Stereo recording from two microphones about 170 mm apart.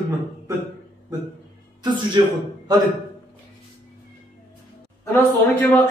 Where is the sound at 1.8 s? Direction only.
25° right (ahead or behind).